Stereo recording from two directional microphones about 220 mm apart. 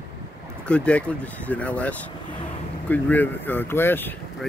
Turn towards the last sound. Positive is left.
turn(degrees=10)  # may be behind; listen again after turning